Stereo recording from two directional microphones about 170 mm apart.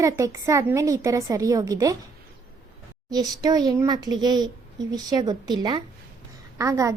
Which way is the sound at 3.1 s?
25° right (ahead or behind).